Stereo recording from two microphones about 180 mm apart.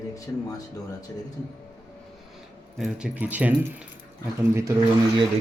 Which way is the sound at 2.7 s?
5° right (ahead or behind).